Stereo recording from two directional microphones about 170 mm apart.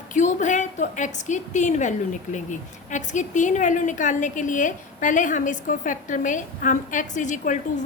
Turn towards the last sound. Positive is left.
turn(degrees=45)  # may be behind; listen again after turning